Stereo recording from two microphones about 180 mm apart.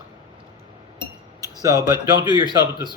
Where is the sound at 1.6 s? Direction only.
20° right (ahead or behind).